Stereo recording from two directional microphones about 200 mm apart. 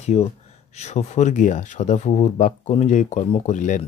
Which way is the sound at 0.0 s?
35° left (ahead or behind).